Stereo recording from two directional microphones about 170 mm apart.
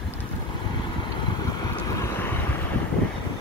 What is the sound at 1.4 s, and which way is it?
Boat, 20° left (ahead or behind).